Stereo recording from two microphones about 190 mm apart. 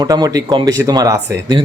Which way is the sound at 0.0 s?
20° right (ahead or behind).